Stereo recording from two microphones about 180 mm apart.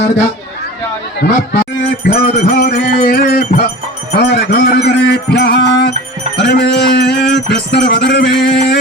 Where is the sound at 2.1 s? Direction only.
60° left (ahead or behind).